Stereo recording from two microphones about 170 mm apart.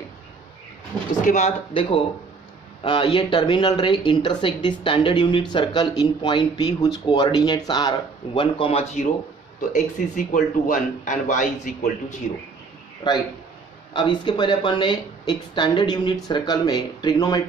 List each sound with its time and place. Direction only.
1.2 s speech: 45° left (ahead or behind)
1.7 s speech: 30° left (ahead or behind)
9.7 s speech: 50° left (ahead or behind)
13.0 s speech: 25° left (ahead or behind)